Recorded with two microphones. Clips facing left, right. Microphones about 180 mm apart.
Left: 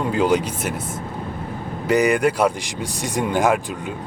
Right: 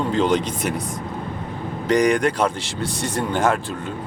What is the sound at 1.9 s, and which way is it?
Speech, 5° left (ahead or behind).